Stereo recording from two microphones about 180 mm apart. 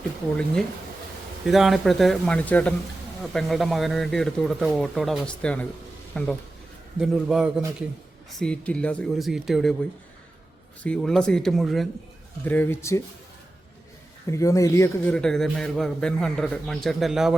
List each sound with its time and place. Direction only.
1.5 s a man's voice: centre (ahead or behind)
10.8 s a man's voice: 5° left (ahead or behind)
12.5 s speech: 10° left (ahead or behind)
14.3 s a man's voice: 15° left (ahead or behind); by 17.3 s centre (ahead or behind)